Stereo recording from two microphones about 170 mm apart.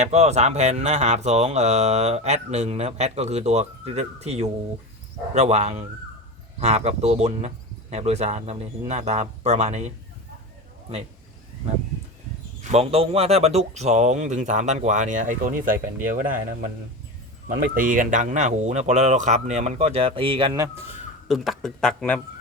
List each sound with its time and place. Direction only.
0.0 s speech: 40° right (ahead or behind)
12.7 s speech: 35° right (ahead or behind); by 16.6 s 55° right (ahead or behind)
17.7 s speech: 50° right (ahead or behind); by 20.6 s 30° right (ahead or behind)
21.2 s speech: centre (ahead or behind)